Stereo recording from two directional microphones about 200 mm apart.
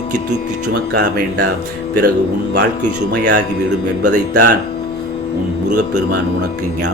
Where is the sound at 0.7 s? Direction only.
50° right (ahead or behind).